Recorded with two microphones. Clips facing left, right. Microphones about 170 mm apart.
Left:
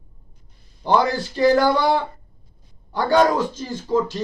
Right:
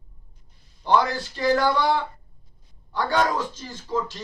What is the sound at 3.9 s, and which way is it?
Speech, 15° left (ahead or behind).